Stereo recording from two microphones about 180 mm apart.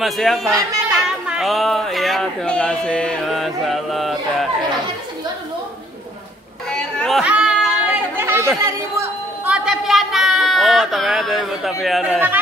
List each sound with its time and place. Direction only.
0.0 s speech: centre (ahead or behind)
0.5 s speech: 20° right (ahead or behind)
1.2 s speech: 5° right (ahead or behind)
6.7 s chatter: centre (ahead or behind); by 8.5 s 15° right (ahead or behind)
9.5 s speech: centre (ahead or behind)